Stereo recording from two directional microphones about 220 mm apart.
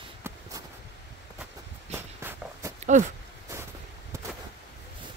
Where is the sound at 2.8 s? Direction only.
35° right (ahead or behind).